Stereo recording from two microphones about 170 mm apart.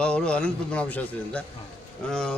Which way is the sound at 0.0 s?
5° left (ahead or behind).